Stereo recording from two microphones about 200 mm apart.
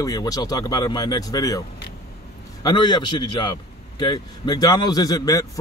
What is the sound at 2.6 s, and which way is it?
Speech, 20° left (ahead or behind).